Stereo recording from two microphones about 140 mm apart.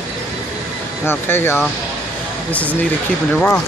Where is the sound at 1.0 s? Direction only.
15° left (ahead or behind).